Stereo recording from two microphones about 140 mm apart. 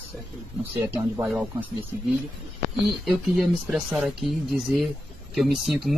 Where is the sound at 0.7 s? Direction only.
15° right (ahead or behind).